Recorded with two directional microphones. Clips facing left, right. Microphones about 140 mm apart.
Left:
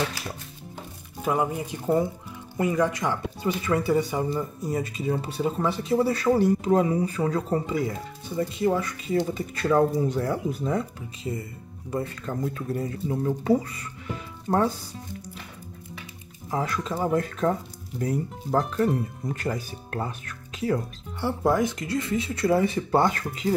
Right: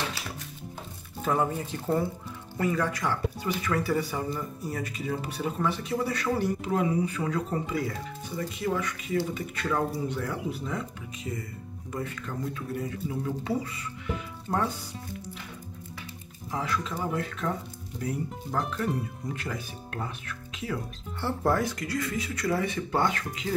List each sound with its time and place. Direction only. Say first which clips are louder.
1.2 s speech: left 2 dB; 15° left (ahead or behind); by 14.6 s 45° left (ahead or behind)
16.4 s speech: left 3 dB; 45° left (ahead or behind)
21.2 s speech: left 3 dB; 15° left (ahead or behind); by 23.5 s 35° left (ahead or behind)